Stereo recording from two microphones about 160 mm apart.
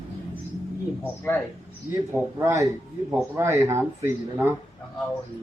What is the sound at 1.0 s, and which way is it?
Speech, 15° left (ahead or behind).